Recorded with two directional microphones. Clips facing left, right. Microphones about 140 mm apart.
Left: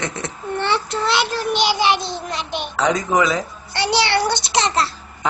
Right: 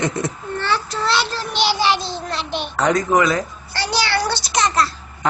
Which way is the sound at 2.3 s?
10° left (ahead or behind).